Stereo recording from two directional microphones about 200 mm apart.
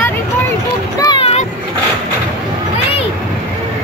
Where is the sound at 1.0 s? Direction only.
25° left (ahead or behind).